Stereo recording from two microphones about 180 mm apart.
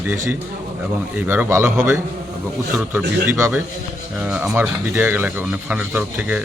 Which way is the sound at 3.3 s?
15° right (ahead or behind).